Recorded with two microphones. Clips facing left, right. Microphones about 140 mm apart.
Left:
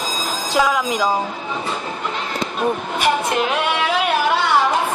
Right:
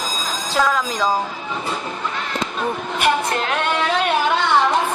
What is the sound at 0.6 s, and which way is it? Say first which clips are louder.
Speech: left 2 dB; 15° left (ahead or behind).